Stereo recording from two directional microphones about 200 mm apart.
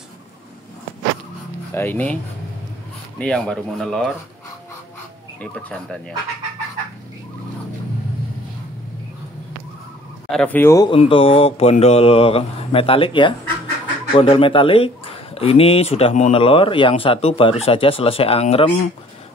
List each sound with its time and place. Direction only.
1.7 s speech: 10° left (ahead or behind)
3.2 s speech: 5° left (ahead or behind)
5.4 s speech: 5° left (ahead or behind)
10.3 s speech: 5° left (ahead or behind)
11.0 s speech: 25° left (ahead or behind)